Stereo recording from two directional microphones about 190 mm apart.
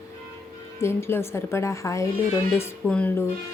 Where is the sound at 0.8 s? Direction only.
15° left (ahead or behind).